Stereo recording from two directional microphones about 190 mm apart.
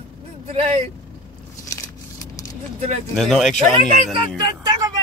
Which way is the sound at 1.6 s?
15° left (ahead or behind).